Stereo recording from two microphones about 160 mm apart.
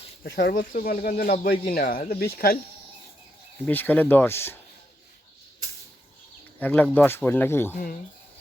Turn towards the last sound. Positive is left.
turn(degrees=15)  # may be behind; listen again after turning